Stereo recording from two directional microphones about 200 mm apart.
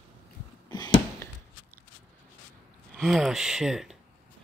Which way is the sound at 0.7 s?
20° left (ahead or behind).